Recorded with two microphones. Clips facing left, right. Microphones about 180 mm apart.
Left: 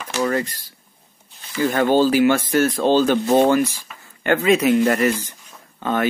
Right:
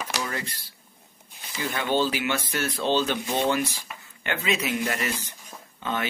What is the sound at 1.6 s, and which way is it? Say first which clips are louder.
Speech: left 9 dB; 45° left (ahead or behind).